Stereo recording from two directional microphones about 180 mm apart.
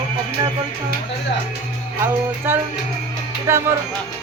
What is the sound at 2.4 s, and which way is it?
Speech, 10° right (ahead or behind).